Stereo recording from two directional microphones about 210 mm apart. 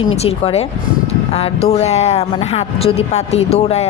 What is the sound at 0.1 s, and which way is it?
A man's voice, 25° left (ahead or behind).